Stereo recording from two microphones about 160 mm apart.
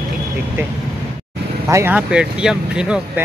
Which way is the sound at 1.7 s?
15° right (ahead or behind).